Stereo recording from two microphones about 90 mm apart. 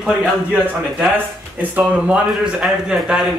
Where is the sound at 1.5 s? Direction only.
15° right (ahead or behind).